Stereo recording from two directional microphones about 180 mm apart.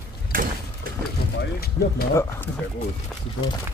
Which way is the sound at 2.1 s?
15° left (ahead or behind).